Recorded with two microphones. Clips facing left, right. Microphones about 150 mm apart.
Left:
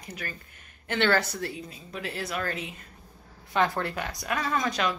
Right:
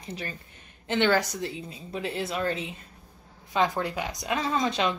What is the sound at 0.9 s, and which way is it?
Speech, 15° right (ahead or behind).